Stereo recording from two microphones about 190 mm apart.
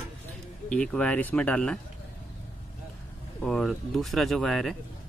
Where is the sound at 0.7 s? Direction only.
5° left (ahead or behind).